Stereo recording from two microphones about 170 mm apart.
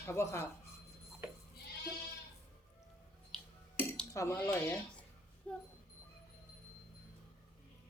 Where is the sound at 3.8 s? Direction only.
15° left (ahead or behind).